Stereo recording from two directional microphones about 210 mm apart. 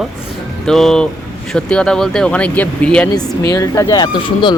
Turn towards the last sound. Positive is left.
turn(degrees=20)  # may be behind; listen again after turning